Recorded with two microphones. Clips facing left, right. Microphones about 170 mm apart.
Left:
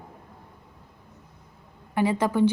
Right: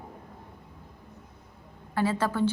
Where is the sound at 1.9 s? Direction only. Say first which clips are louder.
Left 4 dB; 15° left (ahead or behind).